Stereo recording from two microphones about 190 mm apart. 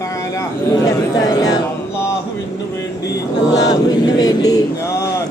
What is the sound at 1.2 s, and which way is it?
Speech, 20° left (ahead or behind).